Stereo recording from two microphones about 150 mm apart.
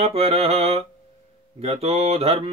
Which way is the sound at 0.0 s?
45° right (ahead or behind).